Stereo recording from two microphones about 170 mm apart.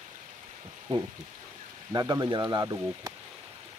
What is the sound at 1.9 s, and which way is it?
Speech, 25° right (ahead or behind).